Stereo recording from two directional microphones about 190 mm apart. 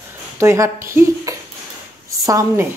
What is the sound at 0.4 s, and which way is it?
Speech, 15° right (ahead or behind).